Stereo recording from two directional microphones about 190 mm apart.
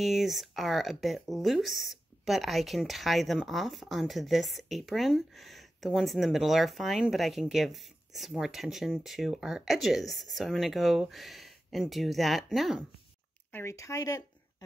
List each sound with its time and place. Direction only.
0.0 s speech: centre (ahead or behind)
13.5 s speech: 15° left (ahead or behind)